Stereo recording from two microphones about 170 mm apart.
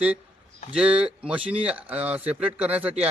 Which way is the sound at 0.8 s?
5° right (ahead or behind).